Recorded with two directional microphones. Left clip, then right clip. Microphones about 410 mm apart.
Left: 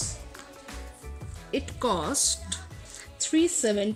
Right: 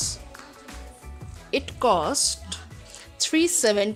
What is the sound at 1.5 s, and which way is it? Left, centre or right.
A woman's voice, centre.